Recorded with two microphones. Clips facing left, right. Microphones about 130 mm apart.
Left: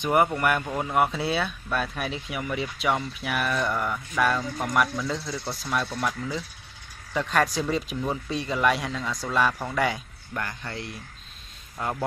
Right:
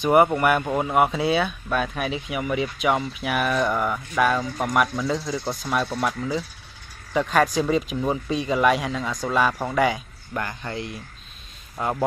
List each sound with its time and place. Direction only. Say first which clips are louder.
0.0 s speech: right 5 dB; 20° right (ahead or behind)
1.3 s speech: right 4 dB; 5° right (ahead or behind); by 5.9 s 20° right (ahead or behind)
7.2 s speech: right 4 dB; 10° right (ahead or behind)
11.7 s speech: right 4 dB; 25° right (ahead or behind)